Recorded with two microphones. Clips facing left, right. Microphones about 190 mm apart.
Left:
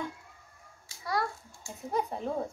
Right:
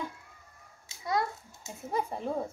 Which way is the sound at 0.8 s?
20° right (ahead or behind).